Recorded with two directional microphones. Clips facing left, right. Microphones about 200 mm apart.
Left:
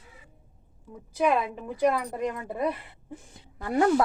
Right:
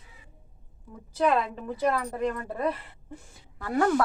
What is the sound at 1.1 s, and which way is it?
A woman's voice, 10° left (ahead or behind).